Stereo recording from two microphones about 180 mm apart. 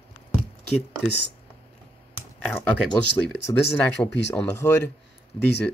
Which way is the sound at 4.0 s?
15° left (ahead or behind).